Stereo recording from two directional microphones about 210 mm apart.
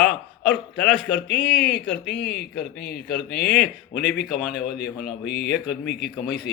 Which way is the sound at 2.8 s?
50° left (ahead or behind).